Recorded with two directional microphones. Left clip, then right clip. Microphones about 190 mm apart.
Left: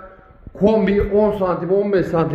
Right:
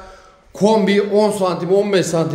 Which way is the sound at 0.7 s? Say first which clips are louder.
Right 2 dB; 15° right (ahead or behind).